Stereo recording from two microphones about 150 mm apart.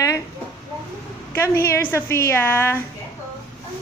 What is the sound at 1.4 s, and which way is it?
Speech, 15° left (ahead or behind).